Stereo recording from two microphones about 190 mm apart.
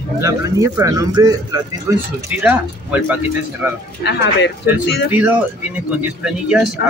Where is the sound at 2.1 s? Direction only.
10° right (ahead or behind).